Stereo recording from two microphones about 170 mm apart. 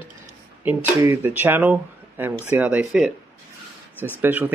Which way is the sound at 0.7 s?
15° right (ahead or behind).